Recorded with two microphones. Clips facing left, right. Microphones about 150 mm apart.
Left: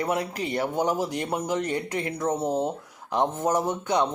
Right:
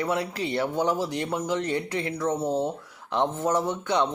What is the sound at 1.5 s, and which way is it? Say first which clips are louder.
Speech: even; 45° left (ahead or behind).